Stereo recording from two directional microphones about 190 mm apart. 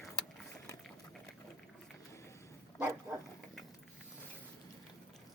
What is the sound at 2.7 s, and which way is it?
Dog, 15° right (ahead or behind).